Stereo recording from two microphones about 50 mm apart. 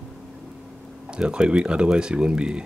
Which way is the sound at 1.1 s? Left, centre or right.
Centre.